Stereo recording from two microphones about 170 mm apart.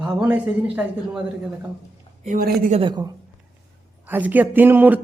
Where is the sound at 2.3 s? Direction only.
55° right (ahead or behind).